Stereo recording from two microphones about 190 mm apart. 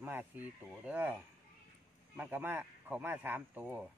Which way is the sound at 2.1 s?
10° right (ahead or behind).